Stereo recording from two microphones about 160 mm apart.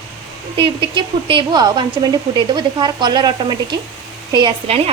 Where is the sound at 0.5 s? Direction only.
30° right (ahead or behind).